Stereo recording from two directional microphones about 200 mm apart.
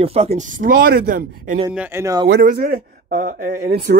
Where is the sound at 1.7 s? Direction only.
10° right (ahead or behind).